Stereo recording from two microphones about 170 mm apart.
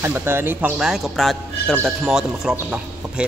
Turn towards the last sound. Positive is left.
turn(degrees=-5)  # may be behind; listen again after turning